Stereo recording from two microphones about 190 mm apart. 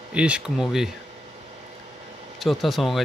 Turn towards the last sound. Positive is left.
turn(degrees=0)  # may be behind; listen again after turning